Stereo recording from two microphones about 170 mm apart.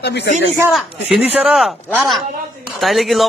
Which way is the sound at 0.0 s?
75° left (ahead or behind).